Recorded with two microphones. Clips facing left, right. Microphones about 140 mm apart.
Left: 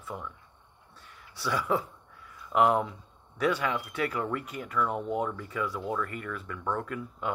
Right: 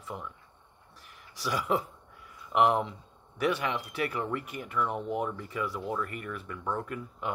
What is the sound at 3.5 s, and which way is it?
Speech, 30° right (ahead or behind).